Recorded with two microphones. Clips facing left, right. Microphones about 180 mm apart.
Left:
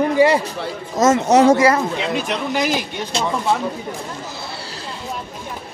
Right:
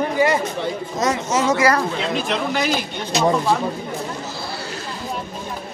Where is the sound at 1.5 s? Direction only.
25° left (ahead or behind).